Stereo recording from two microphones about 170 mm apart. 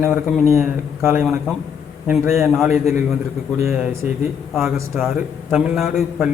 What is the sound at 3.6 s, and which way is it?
Speech, 15° right (ahead or behind).